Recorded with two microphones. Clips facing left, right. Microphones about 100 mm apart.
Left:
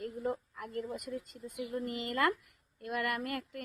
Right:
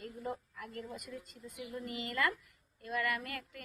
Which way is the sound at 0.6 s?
35° left (ahead or behind).